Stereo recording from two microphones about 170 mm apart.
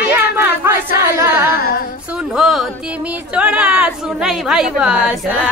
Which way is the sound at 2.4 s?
Centre (ahead or behind).